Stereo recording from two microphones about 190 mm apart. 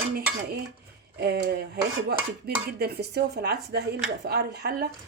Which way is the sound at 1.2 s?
55° right (ahead or behind).